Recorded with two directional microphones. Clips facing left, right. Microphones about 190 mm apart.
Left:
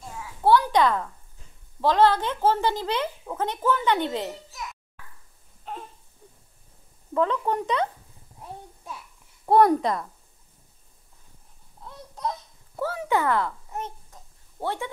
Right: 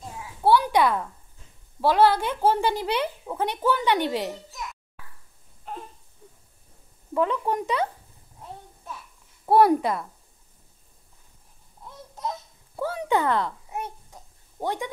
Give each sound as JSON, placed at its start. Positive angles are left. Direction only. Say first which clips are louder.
{"t": 0.4, "sound": "a child's voice", "louder": "even", "side_deg": -10}
{"t": 7.2, "sound": "a woman's voice", "louder": "even", "side_deg": -15}
{"t": 9.5, "sound": "a woman's voice", "louder": "even", "side_deg": -5}
{"t": 11.8, "sound": "a sound", "louder": "left 2 dB", "side_deg": -5}
{"t": 12.8, "sound": "babbling", "louder": "right 1 dB", "side_deg": -15}